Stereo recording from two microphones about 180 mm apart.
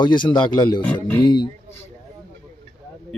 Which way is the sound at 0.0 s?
25° left (ahead or behind).